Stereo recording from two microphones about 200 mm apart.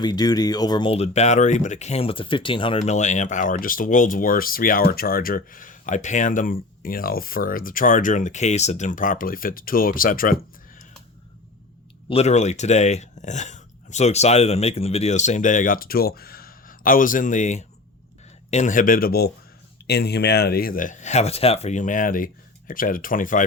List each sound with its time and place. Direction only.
0.0 s speech: 20° left (ahead or behind); by 10.3 s 45° left (ahead or behind)
12.0 s speech: 30° left (ahead or behind)